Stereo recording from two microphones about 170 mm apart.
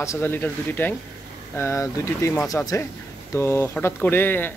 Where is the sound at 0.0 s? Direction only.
15° left (ahead or behind).